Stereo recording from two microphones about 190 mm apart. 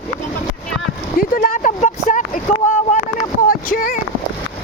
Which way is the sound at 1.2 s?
45° left (ahead or behind).